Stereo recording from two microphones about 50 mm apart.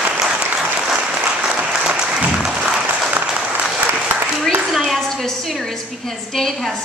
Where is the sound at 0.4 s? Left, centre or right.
Right.